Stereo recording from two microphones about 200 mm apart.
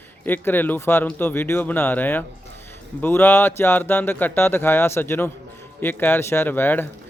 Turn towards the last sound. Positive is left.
turn(degrees=10)  # may be behind; listen again after turning